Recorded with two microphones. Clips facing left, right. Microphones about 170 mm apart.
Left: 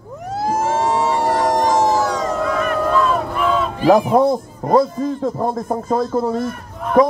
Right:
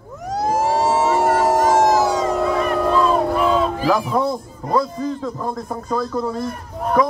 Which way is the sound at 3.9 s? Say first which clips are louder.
Left 10 dB; 40° left (ahead or behind).